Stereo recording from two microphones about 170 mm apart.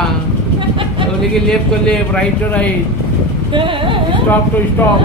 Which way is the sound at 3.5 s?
30° right (ahead or behind).